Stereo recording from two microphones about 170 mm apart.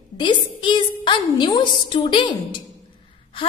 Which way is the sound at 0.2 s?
30° left (ahead or behind).